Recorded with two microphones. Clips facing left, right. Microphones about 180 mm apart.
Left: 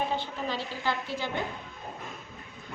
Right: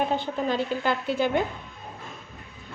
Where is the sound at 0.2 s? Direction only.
50° right (ahead or behind).